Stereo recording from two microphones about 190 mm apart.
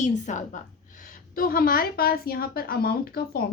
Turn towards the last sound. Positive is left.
turn(degrees=55)  # may be behind; listen again after turning